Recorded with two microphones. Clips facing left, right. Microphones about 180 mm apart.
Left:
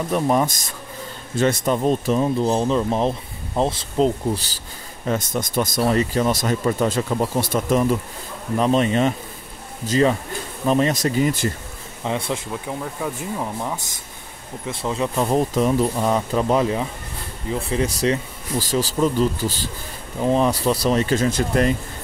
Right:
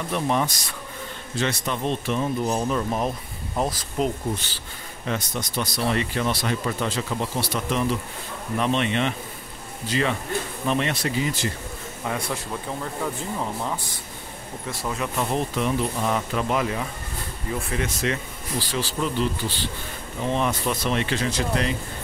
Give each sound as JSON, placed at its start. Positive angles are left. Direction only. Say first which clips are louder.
{"t": 0.1, "sound": "speech", "louder": "left 4 dB", "side_deg": 40}
{"t": 5.0, "sound": "speech", "louder": "left 5 dB", "side_deg": 45}
{"t": 12.0, "sound": "a man's voice", "louder": "left 4 dB", "side_deg": 25}
{"t": 12.6, "sound": "speech", "louder": "left 1 dB", "side_deg": 10}
{"t": 14.7, "sound": "speech", "louder": "left 5 dB", "side_deg": 25}